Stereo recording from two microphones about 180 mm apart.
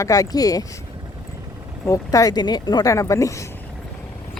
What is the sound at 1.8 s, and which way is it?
Speech, 20° left (ahead or behind).